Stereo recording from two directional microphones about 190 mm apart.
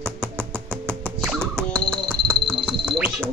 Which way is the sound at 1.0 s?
Centre (ahead or behind).